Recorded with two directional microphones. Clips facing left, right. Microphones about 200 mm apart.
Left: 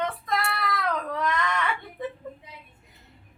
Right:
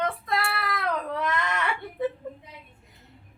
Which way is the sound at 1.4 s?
5° right (ahead or behind).